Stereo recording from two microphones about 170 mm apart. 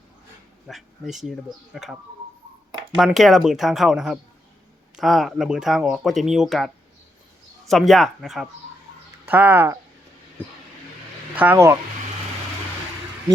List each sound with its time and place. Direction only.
0.7 s speech: centre (ahead or behind)
7.7 s speech: centre (ahead or behind)
9.2 s speech: 10° right (ahead or behind)
11.3 s speech: 15° right (ahead or behind)